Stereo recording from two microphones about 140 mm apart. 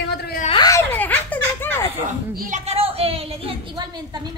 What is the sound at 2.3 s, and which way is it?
Speech, 75° right (ahead or behind).